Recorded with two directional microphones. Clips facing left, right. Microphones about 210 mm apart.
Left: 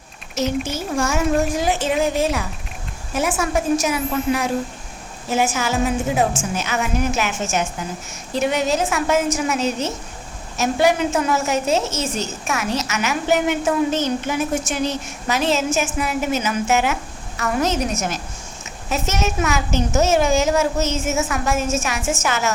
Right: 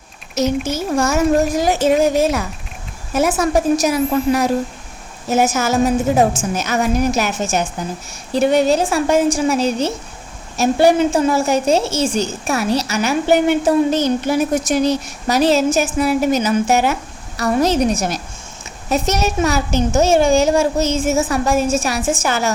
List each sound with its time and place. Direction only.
0.3 s a woman's voice: 40° right (ahead or behind)